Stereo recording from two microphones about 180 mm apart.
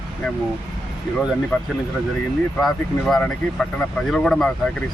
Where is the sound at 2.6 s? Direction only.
Centre (ahead or behind).